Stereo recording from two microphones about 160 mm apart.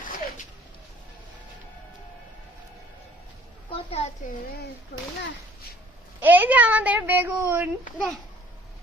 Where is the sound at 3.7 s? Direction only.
35° left (ahead or behind).